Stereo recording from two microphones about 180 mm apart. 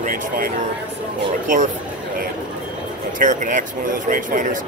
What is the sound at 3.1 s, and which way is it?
Speech, 45° right (ahead or behind).